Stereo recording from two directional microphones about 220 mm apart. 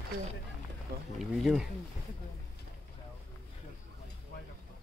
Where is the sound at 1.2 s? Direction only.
Centre (ahead or behind).